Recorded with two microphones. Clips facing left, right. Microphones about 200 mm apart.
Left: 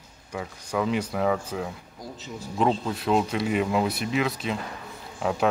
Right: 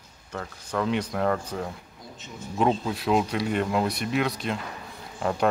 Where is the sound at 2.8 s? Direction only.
Centre (ahead or behind).